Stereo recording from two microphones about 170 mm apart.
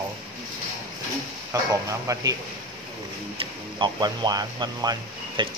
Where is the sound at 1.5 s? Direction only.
20° right (ahead or behind).